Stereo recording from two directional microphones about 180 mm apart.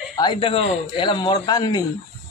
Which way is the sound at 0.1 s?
25° left (ahead or behind).